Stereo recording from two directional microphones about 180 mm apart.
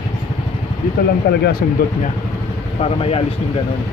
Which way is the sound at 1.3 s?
60° left (ahead or behind).